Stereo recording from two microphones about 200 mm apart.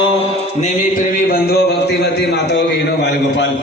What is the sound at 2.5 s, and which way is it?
Speech, 60° left (ahead or behind).